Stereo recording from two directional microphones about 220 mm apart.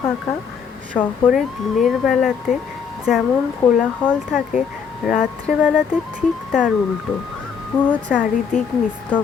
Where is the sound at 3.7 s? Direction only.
Centre (ahead or behind).